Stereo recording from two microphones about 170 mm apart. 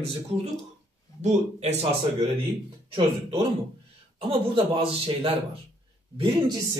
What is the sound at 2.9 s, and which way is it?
A man's voice, 35° right (ahead or behind).